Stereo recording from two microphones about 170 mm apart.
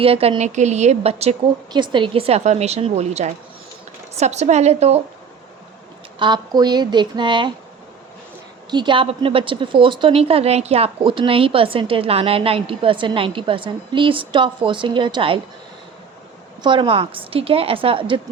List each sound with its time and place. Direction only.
0.0 s a woman's voice: 35° right (ahead or behind)
1.7 s a woman's voice: 30° right (ahead or behind)
6.1 s speech: 25° right (ahead or behind)
8.7 s a woman's voice: 30° right (ahead or behind)
16.6 s a woman's voice: 30° right (ahead or behind)